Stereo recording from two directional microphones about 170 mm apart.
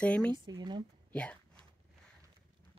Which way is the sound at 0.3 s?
25° right (ahead or behind).